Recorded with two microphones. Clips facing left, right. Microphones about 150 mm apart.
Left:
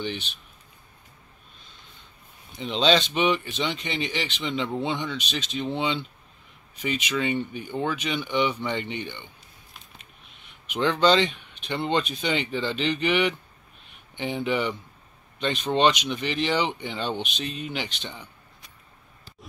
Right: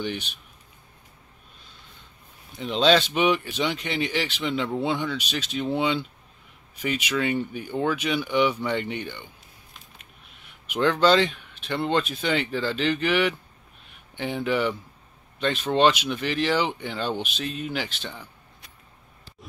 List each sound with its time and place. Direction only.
0.0 s speech: 10° right (ahead or behind)
2.5 s speech: 5° right (ahead or behind)
10.7 s speech: 5° right (ahead or behind)